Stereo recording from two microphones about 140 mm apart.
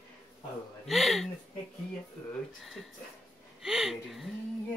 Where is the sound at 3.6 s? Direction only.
5° right (ahead or behind).